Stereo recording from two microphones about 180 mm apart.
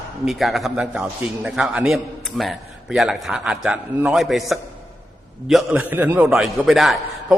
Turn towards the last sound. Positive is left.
turn(degrees=0)  # may be behind; listen again after turning